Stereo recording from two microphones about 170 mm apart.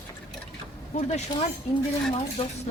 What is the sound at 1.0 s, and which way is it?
Speech, 40° left (ahead or behind).